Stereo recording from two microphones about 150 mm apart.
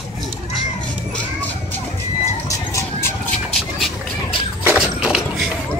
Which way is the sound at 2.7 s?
20° left (ahead or behind).